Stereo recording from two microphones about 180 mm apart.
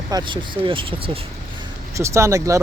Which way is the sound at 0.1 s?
25° right (ahead or behind).